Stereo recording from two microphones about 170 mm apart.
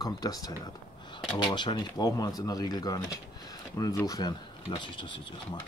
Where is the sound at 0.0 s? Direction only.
20° left (ahead or behind).